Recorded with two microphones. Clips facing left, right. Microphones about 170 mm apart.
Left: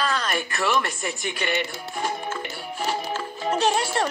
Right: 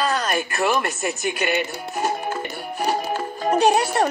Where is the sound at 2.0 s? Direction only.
40° right (ahead or behind).